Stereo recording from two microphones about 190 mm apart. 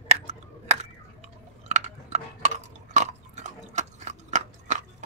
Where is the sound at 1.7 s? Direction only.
35° right (ahead or behind).